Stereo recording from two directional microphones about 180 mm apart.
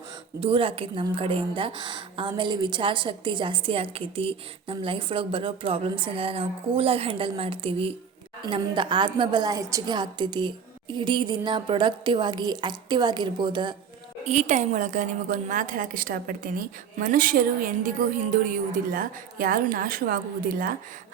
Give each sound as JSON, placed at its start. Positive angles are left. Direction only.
{"t": 0.3, "sound": "a woman's voice", "side_deg": -30}
{"t": 14.3, "sound": "a woman's voice", "side_deg": -40}